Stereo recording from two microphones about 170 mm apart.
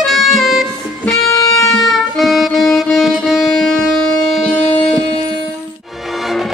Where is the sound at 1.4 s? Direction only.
20° left (ahead or behind).